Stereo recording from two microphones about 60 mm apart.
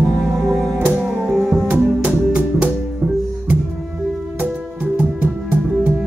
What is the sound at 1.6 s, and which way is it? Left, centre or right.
Music, right.